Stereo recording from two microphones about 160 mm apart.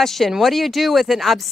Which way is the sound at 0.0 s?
Centre (ahead or behind).